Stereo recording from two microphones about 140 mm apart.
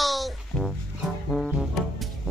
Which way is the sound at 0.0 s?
Centre (ahead or behind).